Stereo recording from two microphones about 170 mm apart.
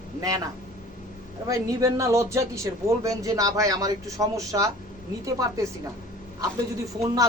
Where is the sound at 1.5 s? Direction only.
20° right (ahead or behind).